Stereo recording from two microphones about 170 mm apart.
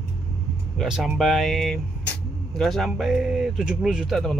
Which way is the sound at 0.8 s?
Centre (ahead or behind).